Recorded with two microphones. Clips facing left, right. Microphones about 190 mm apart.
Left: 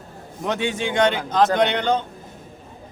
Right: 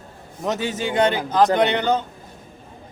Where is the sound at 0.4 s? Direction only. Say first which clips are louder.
Even; 5° right (ahead or behind).